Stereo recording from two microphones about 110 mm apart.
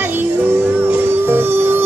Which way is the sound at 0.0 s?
20° right (ahead or behind).